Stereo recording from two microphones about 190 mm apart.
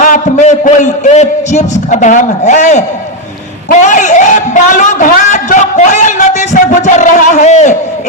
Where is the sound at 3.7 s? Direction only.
40° left (ahead or behind).